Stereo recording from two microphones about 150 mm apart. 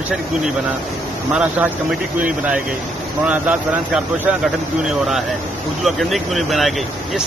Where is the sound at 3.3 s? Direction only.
10° right (ahead or behind).